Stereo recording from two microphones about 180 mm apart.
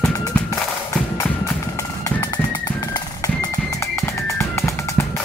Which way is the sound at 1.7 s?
20° left (ahead or behind).